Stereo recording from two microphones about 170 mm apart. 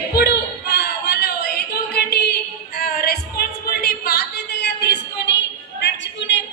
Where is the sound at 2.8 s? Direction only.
65° left (ahead or behind).